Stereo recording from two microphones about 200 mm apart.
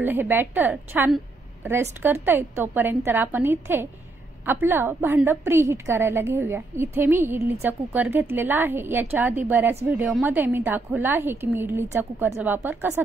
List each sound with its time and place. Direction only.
0.0 s a woman's voice: 10° right (ahead or behind)